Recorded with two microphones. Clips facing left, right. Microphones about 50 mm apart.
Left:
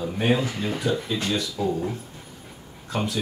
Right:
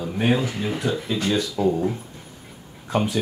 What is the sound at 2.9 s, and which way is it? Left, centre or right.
Speech, right.